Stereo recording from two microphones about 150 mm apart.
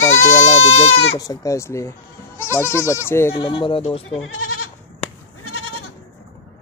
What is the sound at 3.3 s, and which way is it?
Speech, 35° left (ahead or behind).